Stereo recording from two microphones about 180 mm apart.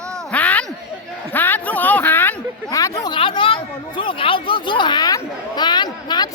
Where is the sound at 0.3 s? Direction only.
10° left (ahead or behind).